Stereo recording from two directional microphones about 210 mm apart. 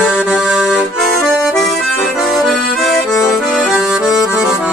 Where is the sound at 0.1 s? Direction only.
5° right (ahead or behind).